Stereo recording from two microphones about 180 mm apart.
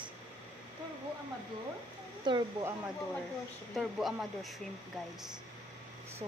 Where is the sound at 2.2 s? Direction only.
25° right (ahead or behind).